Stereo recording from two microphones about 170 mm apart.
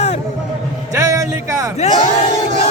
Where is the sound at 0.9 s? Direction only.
20° right (ahead or behind).